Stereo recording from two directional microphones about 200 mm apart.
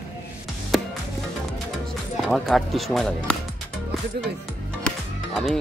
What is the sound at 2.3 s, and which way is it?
Speech, centre (ahead or behind).